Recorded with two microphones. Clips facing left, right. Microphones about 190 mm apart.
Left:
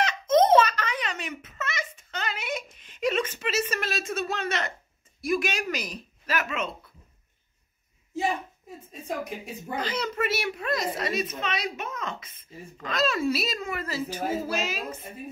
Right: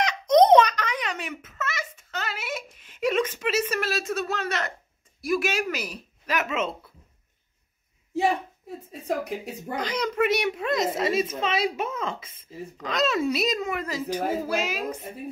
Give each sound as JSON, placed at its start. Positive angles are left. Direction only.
{"t": 0.4, "sound": "a sound", "side_deg": -15}
{"t": 3.7, "sound": "a woman's voice", "side_deg": -5}
{"t": 8.1, "sound": "a woman's voice", "side_deg": -60}
{"t": 9.8, "sound": "a child's voice", "side_deg": -15}